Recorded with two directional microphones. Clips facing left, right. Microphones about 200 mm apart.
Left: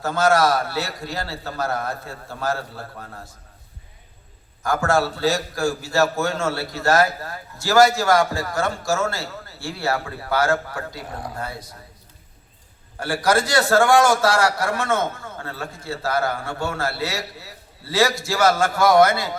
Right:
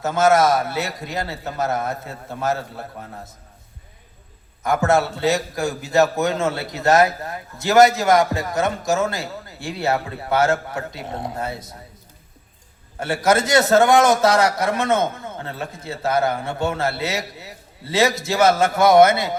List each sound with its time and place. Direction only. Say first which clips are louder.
0.0 s a man's voice: right 2 dB; 20° right (ahead or behind)
4.6 s a man's voice: right 2 dB; 20° right (ahead or behind)
13.0 s a man's voice: right 2 dB; 25° right (ahead or behind)